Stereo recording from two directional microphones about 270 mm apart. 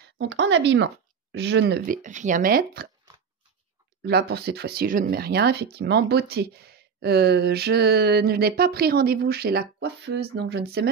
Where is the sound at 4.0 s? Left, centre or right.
Right.